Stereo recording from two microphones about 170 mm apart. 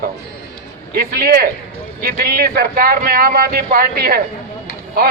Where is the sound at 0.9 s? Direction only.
65° right (ahead or behind).